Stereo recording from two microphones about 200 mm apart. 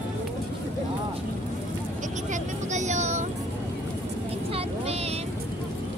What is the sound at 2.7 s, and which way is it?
Vehicle, 35° right (ahead or behind).